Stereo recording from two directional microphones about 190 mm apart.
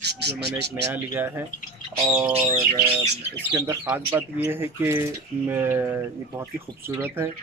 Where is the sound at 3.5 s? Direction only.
15° right (ahead or behind).